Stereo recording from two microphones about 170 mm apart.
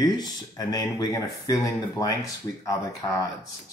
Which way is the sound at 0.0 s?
25° left (ahead or behind).